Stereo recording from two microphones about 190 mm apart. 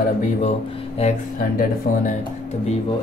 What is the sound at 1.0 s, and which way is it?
Speech, 45° left (ahead or behind).